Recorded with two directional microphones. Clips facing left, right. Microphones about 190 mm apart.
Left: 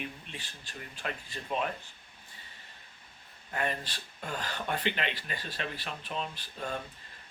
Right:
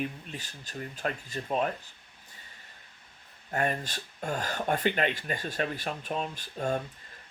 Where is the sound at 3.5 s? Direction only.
45° right (ahead or behind).